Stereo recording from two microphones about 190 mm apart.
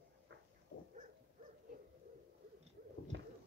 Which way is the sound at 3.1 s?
75° right (ahead or behind).